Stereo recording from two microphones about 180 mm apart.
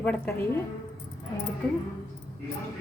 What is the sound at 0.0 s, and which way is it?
Speech, 10° left (ahead or behind).